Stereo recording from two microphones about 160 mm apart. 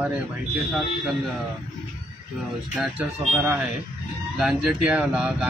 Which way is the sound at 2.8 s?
10° right (ahead or behind).